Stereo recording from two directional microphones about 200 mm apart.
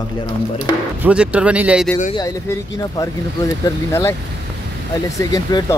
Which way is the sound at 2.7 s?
15° left (ahead or behind).